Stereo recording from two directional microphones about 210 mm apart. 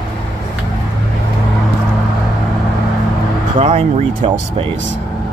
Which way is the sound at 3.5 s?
30° right (ahead or behind).